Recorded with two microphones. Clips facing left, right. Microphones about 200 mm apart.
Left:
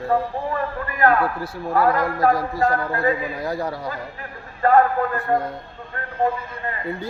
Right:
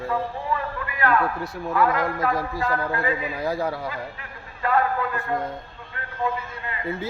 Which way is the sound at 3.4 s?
Centre (ahead or behind).